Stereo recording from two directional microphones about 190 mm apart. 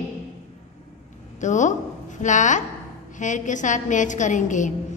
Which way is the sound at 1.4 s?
40° left (ahead or behind).